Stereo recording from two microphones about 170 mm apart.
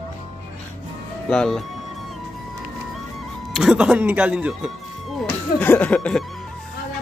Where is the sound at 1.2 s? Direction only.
5° left (ahead or behind).